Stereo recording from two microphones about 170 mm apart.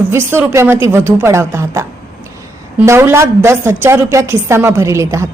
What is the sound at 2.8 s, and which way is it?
A woman's voice, 15° right (ahead or behind).